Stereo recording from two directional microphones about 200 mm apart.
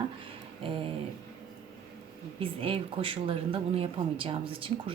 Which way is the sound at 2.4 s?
25° right (ahead or behind).